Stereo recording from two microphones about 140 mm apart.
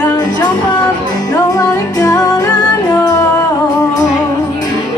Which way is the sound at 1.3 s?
25° left (ahead or behind).